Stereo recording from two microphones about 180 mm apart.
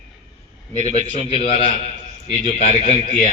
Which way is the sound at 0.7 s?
40° left (ahead or behind).